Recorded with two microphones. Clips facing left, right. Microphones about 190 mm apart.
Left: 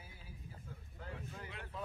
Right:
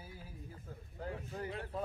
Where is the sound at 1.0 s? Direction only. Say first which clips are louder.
Right 7 dB; 40° right (ahead or behind).